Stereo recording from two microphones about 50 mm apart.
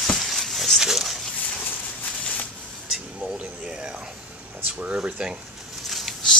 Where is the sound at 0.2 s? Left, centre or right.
Centre.